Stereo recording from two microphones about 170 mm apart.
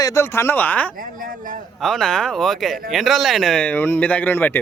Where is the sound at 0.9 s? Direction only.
55° right (ahead or behind).